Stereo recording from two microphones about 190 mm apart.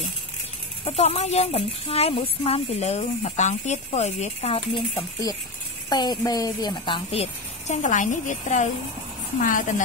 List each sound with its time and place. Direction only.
0.8 s speech: 35° left (ahead or behind)
5.9 s a woman's voice: 20° left (ahead or behind); by 9.8 s 45° left (ahead or behind)